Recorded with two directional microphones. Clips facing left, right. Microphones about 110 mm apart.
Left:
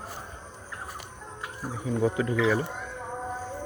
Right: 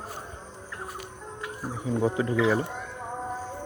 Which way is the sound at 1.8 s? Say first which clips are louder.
Even; 25° right (ahead or behind).